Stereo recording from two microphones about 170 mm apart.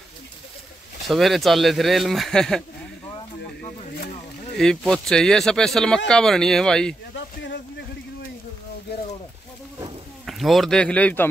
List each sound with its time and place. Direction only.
1.0 s speech: centre (ahead or behind)
4.6 s speech: 5° left (ahead or behind)
7.2 s a sound: 90° left
10.2 s speech: centre (ahead or behind)